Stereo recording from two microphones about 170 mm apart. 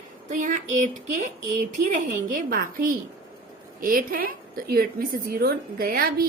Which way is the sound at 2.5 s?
55° right (ahead or behind).